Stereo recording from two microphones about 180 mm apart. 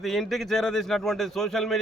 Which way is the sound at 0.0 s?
Centre (ahead or behind).